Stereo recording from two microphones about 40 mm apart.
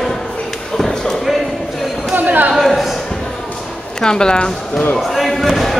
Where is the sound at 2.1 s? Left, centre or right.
Right.